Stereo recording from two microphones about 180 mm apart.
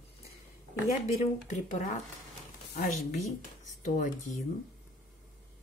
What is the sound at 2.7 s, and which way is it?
Speech, 45° left (ahead or behind).